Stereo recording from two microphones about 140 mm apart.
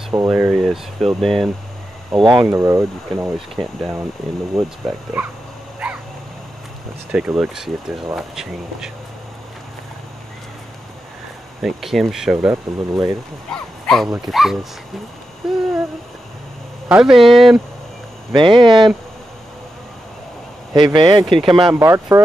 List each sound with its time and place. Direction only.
0.3 s speech: 5° right (ahead or behind)
2.1 s speech: 30° right (ahead or behind)
2.4 s speech: 20° right (ahead or behind)
3.3 s speech: centre (ahead or behind)
7.1 s speech: 5° right (ahead or behind)
11.6 s speech: centre (ahead or behind)
16.9 s speech: 5° right (ahead or behind)
18.3 s speech: 35° right (ahead or behind)
20.7 s speech: 35° right (ahead or behind)
21.7 s speech: 20° right (ahead or behind)